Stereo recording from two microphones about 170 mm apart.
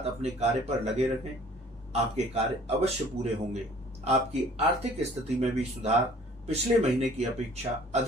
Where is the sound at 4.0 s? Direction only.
40° right (ahead or behind).